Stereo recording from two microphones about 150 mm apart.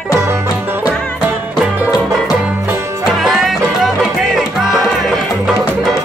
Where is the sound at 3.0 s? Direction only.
Centre (ahead or behind).